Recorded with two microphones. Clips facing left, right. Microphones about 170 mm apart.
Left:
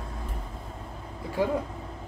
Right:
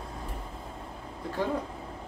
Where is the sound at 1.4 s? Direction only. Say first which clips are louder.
Left 4 dB; 10° left (ahead or behind).